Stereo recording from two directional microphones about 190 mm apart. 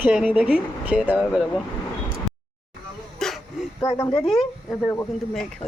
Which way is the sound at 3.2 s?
Centre (ahead or behind).